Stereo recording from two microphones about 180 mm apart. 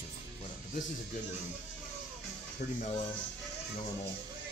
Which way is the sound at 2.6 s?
55° left (ahead or behind).